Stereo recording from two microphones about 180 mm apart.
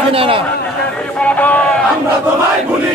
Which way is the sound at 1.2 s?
10° left (ahead or behind).